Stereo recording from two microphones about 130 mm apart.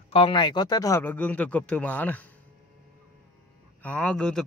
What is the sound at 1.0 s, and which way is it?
Speech, 15° left (ahead or behind).